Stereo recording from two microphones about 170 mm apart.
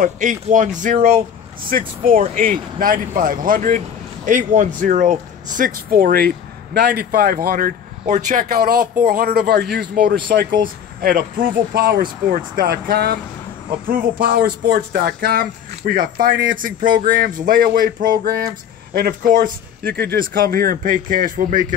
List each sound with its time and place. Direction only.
0.0 s speech: 50° right (ahead or behind); by 13.2 s 65° right (ahead or behind)
14.2 s speech: 60° right (ahead or behind)